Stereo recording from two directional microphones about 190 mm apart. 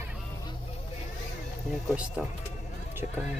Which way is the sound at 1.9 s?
5° right (ahead or behind).